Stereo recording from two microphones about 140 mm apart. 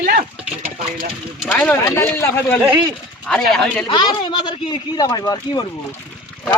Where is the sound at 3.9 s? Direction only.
35° left (ahead or behind).